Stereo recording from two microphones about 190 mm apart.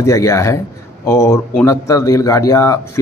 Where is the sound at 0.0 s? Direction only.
15° left (ahead or behind).